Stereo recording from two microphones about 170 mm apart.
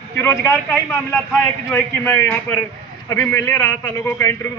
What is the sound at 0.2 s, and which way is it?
Speech, 15° left (ahead or behind).